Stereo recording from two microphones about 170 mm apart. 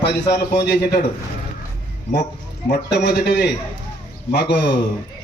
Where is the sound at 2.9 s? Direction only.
80° left.